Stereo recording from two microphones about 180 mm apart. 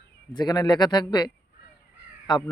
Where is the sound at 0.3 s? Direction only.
25° left (ahead or behind).